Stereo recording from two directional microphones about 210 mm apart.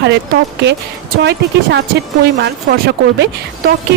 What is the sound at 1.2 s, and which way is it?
A woman's voice, 50° right (ahead or behind).